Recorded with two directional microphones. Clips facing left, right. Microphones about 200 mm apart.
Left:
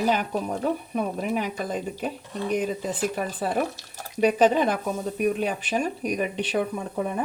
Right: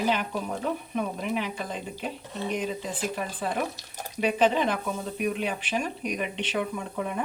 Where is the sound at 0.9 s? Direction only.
45° left (ahead or behind).